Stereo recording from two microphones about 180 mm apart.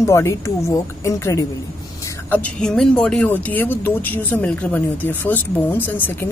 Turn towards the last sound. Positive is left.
turn(degrees=10)  # may be behind; listen again after turning